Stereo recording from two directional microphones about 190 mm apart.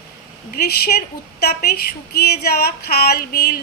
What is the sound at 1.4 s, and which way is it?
A woman's voice, 55° left (ahead or behind).